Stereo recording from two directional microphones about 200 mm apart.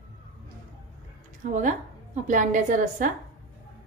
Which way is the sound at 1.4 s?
40° right (ahead or behind).